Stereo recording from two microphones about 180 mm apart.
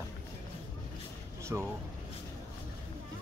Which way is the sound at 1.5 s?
15° right (ahead or behind).